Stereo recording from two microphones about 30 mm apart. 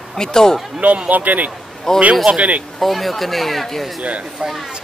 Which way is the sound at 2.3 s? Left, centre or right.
Right.